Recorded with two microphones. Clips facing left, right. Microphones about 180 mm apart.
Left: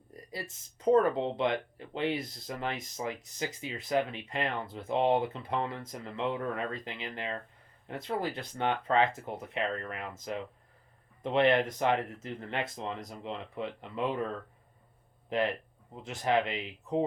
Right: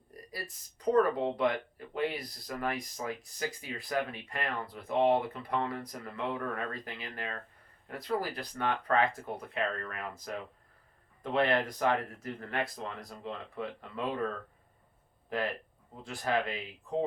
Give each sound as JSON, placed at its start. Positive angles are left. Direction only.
{"t": 0.3, "sound": "speech", "side_deg": 25}
{"t": 15.3, "sound": "speech", "side_deg": 20}